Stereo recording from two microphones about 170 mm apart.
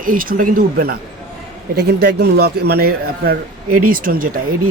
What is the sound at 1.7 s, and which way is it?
A man's voice, 70° right (ahead or behind).